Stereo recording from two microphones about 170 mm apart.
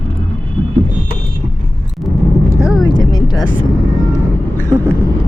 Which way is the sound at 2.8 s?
25° left (ahead or behind).